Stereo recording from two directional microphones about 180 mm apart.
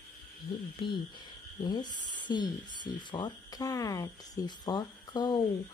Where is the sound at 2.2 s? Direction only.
25° left (ahead or behind).